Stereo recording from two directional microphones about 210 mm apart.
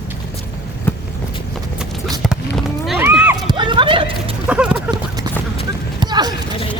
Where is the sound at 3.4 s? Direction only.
20° right (ahead or behind).